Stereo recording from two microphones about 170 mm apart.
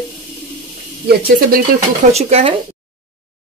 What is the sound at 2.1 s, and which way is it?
Speech, 40° right (ahead or behind).